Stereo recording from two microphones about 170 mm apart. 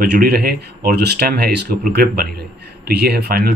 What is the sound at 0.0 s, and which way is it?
Speech, 65° right (ahead or behind).